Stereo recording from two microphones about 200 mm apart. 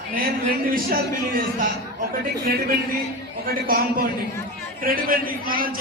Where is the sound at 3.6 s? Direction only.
45° right (ahead or behind).